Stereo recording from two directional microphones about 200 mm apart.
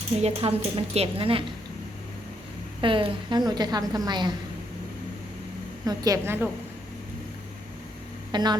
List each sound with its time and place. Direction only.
0.2 s a woman's voice: 30° right (ahead or behind)
2.8 s a woman's voice: 25° right (ahead or behind)
5.8 s a woman's voice: 20° right (ahead or behind)
8.3 s speech: 20° right (ahead or behind)